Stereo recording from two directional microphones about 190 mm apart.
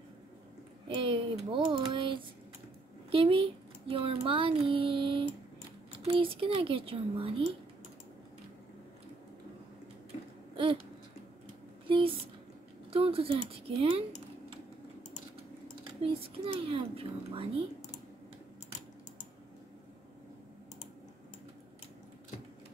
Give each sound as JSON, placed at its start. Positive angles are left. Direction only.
{"t": 0.8, "sound": "typing", "side_deg": -25}
{"t": 3.1, "sound": "a child's voice", "side_deg": -30}
{"t": 10.5, "sound": "a sound", "side_deg": -25}
{"t": 11.9, "sound": "a sound", "side_deg": -30}
{"t": 12.9, "sound": "speech", "side_deg": -30}
{"t": 16.0, "sound": "a child's voice", "side_deg": -30}